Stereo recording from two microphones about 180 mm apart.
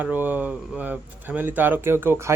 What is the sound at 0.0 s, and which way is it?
A man's voice, 10° right (ahead or behind).